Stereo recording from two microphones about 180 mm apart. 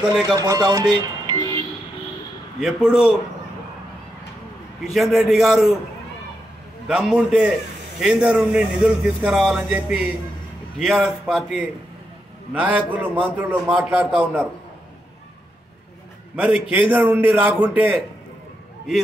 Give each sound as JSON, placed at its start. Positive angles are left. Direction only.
{"t": 0.3, "sound": "speech", "side_deg": -20}
{"t": 2.6, "sound": "a man's voice", "side_deg": -5}
{"t": 4.8, "sound": "a man's voice", "side_deg": 0}
{"t": 6.9, "sound": "a man's voice", "side_deg": -5}
{"t": 16.3, "sound": "a man's voice", "side_deg": -5}